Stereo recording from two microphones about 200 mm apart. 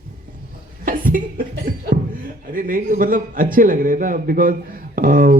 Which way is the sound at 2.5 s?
45° right (ahead or behind).